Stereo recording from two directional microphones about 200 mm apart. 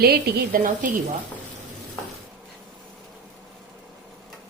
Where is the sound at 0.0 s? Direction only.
50° right (ahead or behind).